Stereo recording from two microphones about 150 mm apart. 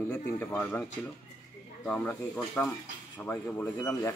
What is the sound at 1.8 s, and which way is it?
A man's voice, 10° left (ahead or behind).